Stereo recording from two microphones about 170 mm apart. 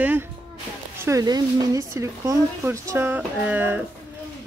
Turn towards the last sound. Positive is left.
turn(degrees=-10)  # may be behind; listen again after turning